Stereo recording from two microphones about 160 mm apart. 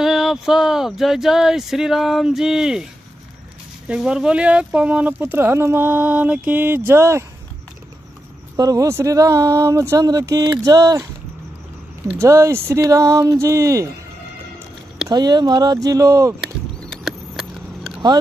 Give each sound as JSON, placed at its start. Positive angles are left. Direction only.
{"t": 0.0, "sound": "speech", "side_deg": 0}
{"t": 8.5, "sound": "speech", "side_deg": -20}
{"t": 12.2, "sound": "speech", "side_deg": -15}
{"t": 15.0, "sound": "speech", "side_deg": -25}